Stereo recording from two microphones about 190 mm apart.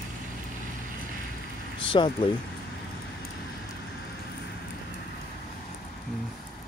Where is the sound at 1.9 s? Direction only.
25° left (ahead or behind).